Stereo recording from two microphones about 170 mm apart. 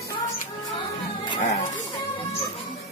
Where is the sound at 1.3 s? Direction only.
45° left (ahead or behind).